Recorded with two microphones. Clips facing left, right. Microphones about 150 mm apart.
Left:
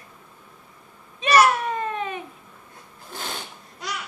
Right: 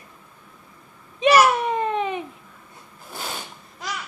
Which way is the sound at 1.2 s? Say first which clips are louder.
Right 2 dB; 20° right (ahead or behind).